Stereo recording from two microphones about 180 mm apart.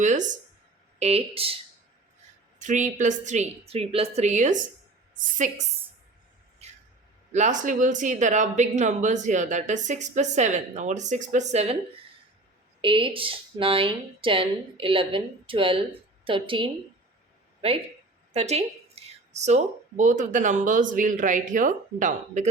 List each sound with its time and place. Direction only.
0.0 s speech: 45° right (ahead or behind)
2.6 s speech: 45° right (ahead or behind)
6.6 s a sound: 35° right (ahead or behind)
7.3 s speech: 45° right (ahead or behind)
12.8 s a woman's voice: 30° right (ahead or behind); by 22.4 s 45° right (ahead or behind)